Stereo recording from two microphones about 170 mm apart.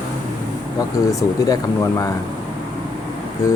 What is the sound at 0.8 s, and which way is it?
Speech, 20° left (ahead or behind).